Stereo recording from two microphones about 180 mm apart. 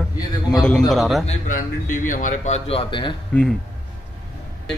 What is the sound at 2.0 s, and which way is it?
Speech, 45° left (ahead or behind).